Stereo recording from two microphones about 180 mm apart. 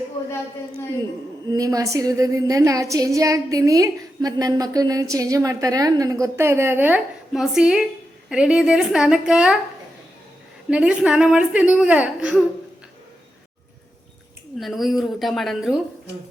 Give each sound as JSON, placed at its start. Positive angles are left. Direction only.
{"t": 1.5, "sound": "a woman's voice", "side_deg": -20}
{"t": 10.7, "sound": "speech", "side_deg": -5}
{"t": 14.6, "sound": "speech", "side_deg": 0}